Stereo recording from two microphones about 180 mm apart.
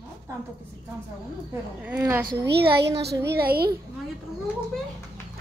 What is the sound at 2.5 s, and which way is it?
A woman's voice, 65° right (ahead or behind).